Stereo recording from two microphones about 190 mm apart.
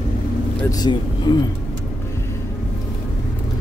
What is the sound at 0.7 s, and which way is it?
Speech, 20° left (ahead or behind).